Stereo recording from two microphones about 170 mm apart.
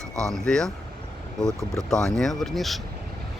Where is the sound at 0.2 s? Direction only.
5° left (ahead or behind).